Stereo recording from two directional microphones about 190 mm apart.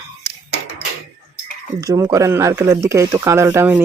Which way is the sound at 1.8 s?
15° right (ahead or behind).